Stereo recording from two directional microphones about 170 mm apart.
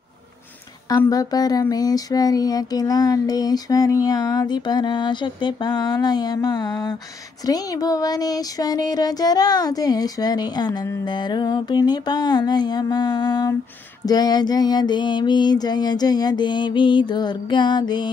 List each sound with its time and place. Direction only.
0.8 s speech: 20° left (ahead or behind)